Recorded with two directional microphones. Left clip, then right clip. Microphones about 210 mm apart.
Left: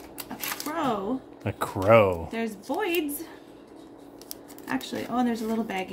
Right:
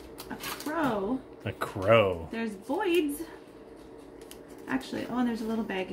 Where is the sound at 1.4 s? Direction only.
25° left (ahead or behind).